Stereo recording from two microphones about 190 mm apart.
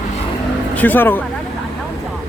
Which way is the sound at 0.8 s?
10° left (ahead or behind).